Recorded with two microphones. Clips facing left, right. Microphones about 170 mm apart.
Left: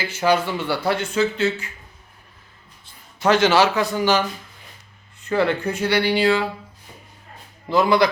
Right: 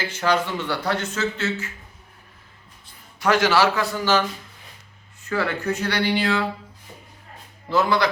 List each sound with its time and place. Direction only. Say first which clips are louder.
0.1 s speech: left 4 dB; 10° left (ahead or behind)
3.2 s a man's voice: left 3 dB; 25° left (ahead or behind)
5.3 s a man's voice: left 4 dB; 25° left (ahead or behind)
5.9 s speech: left 5 dB; 10° left (ahead or behind)
7.7 s speech: left 3 dB; 15° left (ahead or behind)